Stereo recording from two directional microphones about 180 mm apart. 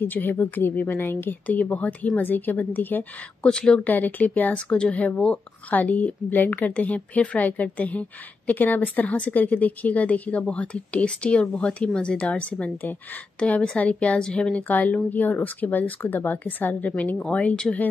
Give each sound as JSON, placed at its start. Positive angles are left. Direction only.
{"t": 0.0, "sound": "a woman's voice", "side_deg": 10}